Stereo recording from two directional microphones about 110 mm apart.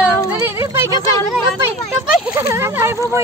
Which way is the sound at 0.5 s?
25° right (ahead or behind).